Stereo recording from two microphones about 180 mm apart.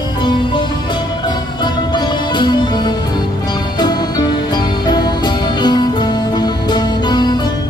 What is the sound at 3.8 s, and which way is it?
Music, 25° left (ahead or behind).